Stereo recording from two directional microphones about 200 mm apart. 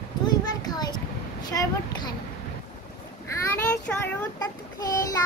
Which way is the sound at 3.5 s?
15° left (ahead or behind).